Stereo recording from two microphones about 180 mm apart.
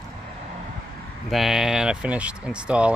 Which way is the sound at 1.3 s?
Centre (ahead or behind).